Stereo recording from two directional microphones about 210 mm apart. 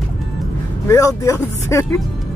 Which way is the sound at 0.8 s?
15° left (ahead or behind).